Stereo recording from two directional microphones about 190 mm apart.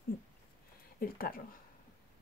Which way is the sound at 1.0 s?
50° left (ahead or behind).